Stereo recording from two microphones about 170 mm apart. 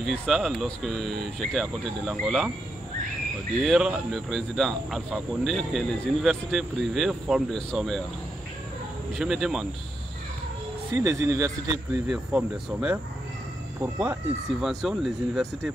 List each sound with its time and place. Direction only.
0.0 s speech: centre (ahead or behind)
3.6 s speech: centre (ahead or behind)
9.2 s speech: centre (ahead or behind)
11.0 s speech: 20° right (ahead or behind)
12.1 s speech: 5° right (ahead or behind)
14.6 s speech: centre (ahead or behind)